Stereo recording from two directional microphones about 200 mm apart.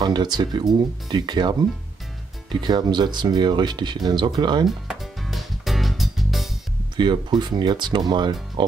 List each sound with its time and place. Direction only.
0.0 s speech: 20° right (ahead or behind)
4.6 s music: centre (ahead or behind)
7.0 s speech: 20° right (ahead or behind)